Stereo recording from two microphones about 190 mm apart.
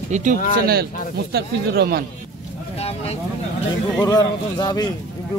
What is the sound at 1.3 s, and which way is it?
Speech, 55° right (ahead or behind).